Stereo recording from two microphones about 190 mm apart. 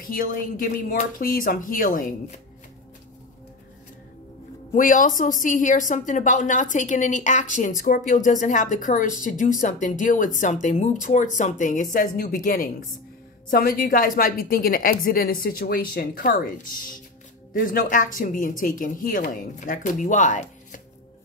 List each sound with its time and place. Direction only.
0.0 s speech: 45° left (ahead or behind)
4.7 s a woman's voice: 45° left (ahead or behind)